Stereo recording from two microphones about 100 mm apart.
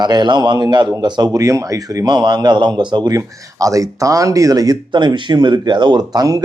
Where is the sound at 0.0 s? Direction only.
45° right (ahead or behind).